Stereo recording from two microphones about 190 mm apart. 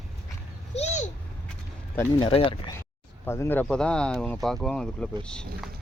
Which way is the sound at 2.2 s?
30° left (ahead or behind).